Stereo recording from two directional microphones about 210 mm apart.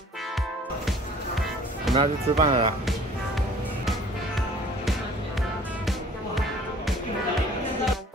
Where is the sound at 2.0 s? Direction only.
30° right (ahead or behind).